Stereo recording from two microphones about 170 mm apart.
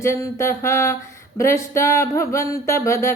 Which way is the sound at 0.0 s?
15° left (ahead or behind).